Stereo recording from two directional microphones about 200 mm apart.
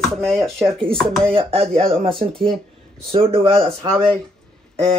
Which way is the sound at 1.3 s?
25° right (ahead or behind).